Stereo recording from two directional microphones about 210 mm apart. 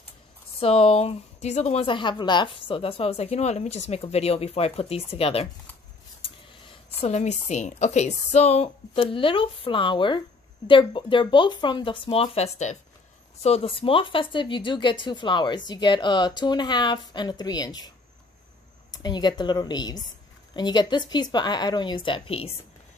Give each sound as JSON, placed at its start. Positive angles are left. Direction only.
{"t": 0.6, "sound": "speech", "side_deg": 30}
{"t": 7.0, "sound": "speech", "side_deg": 30}